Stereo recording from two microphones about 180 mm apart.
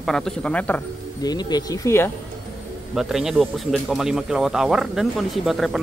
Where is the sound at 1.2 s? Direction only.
20° left (ahead or behind).